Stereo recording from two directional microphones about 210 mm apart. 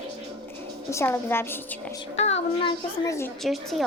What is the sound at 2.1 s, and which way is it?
Speech, 30° left (ahead or behind).